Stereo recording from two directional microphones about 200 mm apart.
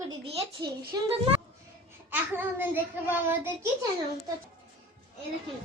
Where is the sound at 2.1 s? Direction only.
10° right (ahead or behind).